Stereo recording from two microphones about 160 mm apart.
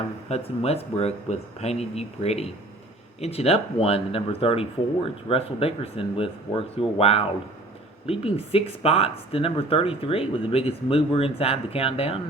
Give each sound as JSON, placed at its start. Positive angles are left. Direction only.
{"t": 0.3, "sound": "speech", "side_deg": 40}